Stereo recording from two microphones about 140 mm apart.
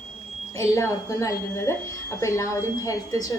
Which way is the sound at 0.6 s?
20° left (ahead or behind).